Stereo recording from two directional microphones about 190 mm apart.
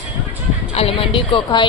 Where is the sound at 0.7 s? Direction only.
30° left (ahead or behind).